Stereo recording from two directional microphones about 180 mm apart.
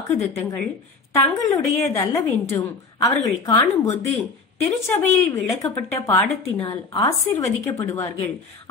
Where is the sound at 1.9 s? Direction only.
15° left (ahead or behind).